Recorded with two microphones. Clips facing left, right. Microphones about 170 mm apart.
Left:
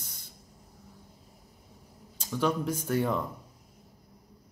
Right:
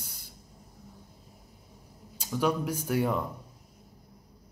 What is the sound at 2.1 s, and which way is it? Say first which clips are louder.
Speech: right 1 dB; 10° right (ahead or behind).